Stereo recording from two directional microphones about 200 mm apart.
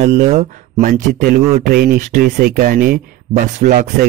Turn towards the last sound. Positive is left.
turn(degrees=-40)  # may be behind; listen again after turning